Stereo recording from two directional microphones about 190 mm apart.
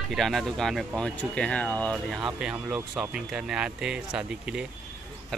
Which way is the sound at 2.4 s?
5° right (ahead or behind).